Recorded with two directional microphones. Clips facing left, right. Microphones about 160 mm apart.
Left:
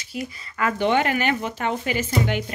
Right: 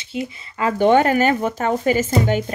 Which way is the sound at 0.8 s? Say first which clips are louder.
Right 7 dB; 45° right (ahead or behind).